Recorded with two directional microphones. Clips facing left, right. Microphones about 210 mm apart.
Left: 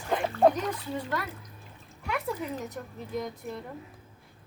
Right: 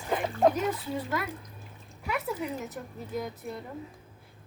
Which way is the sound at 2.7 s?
5° right (ahead or behind).